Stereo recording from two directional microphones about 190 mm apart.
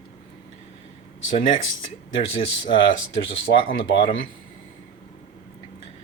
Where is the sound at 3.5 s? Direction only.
65° left (ahead or behind).